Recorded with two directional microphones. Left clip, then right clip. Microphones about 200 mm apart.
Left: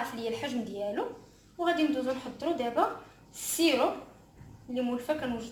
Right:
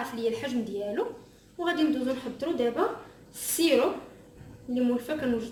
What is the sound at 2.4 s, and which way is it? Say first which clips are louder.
Speech: right 1 dB; 15° left (ahead or behind).